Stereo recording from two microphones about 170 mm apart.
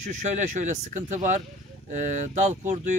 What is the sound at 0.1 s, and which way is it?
Speech, 45° right (ahead or behind).